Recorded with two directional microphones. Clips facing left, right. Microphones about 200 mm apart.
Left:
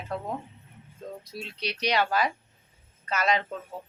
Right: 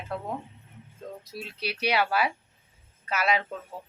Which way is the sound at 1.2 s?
5° right (ahead or behind).